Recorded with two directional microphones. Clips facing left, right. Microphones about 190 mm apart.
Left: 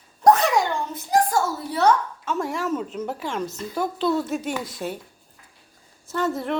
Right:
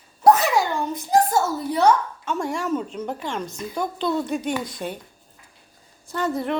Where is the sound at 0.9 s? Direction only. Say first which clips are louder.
Right 2 dB; 25° right (ahead or behind).